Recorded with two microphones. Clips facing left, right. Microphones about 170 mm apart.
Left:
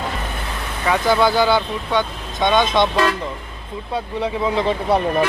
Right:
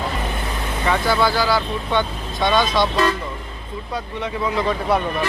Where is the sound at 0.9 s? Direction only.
15° left (ahead or behind).